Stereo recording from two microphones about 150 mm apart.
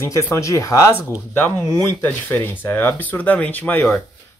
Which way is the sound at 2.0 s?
10° left (ahead or behind).